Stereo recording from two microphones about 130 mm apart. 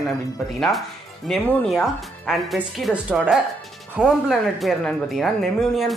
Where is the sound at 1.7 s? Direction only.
Centre (ahead or behind).